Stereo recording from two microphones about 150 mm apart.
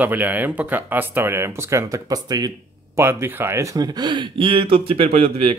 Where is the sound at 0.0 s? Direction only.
10° right (ahead or behind).